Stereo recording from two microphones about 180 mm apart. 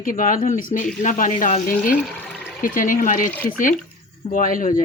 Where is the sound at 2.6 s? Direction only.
50° left (ahead or behind).